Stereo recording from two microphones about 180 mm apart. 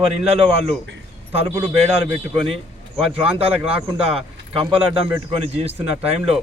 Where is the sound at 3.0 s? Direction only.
30° right (ahead or behind).